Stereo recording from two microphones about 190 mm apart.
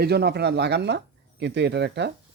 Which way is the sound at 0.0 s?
60° right (ahead or behind).